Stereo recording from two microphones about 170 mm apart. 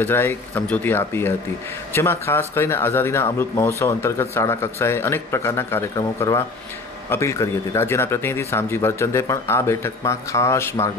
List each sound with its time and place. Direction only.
0.0 s speech: 15° left (ahead or behind)